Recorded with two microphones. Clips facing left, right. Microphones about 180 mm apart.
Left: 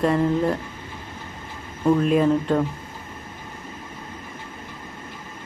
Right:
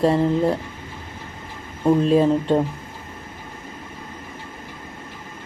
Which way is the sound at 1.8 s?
25° right (ahead or behind).